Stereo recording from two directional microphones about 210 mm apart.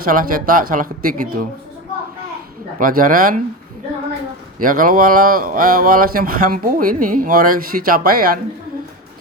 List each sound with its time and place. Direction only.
0.0 s speech: 40° right (ahead or behind)
2.7 s speech: 40° right (ahead or behind)
4.6 s speech: 40° right (ahead or behind)